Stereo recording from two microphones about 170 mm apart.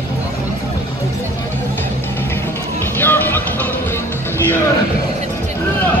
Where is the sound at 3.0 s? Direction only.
10° left (ahead or behind).